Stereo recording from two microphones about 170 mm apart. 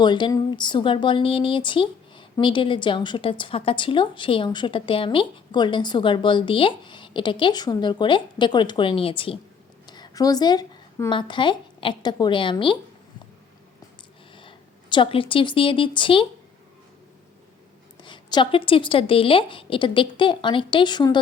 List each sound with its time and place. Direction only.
0.0 s a woman's voice: 25° left (ahead or behind)
14.3 s speech: 30° left (ahead or behind)
18.0 s speech: 25° left (ahead or behind)